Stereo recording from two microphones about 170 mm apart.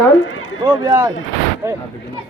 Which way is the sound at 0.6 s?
25° right (ahead or behind).